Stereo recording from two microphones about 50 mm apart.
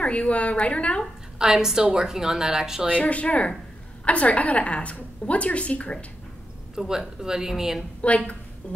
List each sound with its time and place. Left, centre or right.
0.0 s a woman's voice: left
1.4 s a woman's voice: centre
2.9 s a woman's voice: left
6.8 s a woman's voice: centre
8.0 s a woman's voice: left
8.6 s a sound: left